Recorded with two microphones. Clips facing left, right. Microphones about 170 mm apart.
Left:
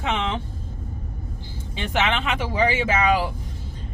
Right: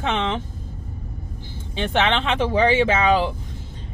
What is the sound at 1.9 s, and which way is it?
Speech, 30° right (ahead or behind).